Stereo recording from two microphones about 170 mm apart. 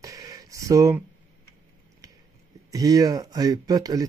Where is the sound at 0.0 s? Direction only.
20° right (ahead or behind).